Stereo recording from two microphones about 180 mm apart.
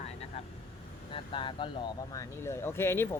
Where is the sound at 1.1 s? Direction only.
30° left (ahead or behind).